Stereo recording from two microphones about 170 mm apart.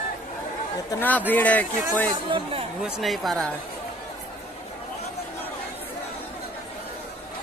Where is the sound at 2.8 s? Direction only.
Centre (ahead or behind).